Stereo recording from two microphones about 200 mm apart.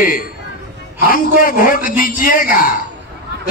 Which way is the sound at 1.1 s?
45° left (ahead or behind).